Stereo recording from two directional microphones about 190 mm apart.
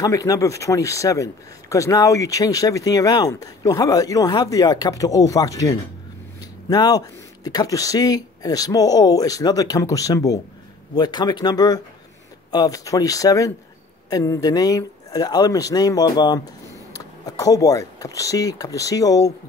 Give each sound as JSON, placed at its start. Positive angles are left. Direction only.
{"t": 0.0, "sound": "speech", "side_deg": 20}